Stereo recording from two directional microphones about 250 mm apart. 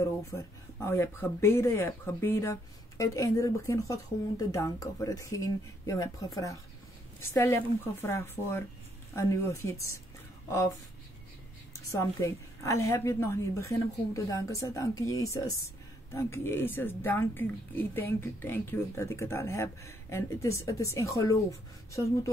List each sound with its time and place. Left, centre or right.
0.2 s speech: centre
11.9 s speech: centre